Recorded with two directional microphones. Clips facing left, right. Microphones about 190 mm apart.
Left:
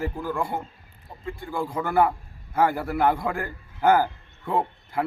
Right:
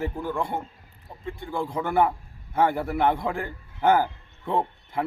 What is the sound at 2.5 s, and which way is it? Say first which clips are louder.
A man's voice: even; centre (ahead or behind).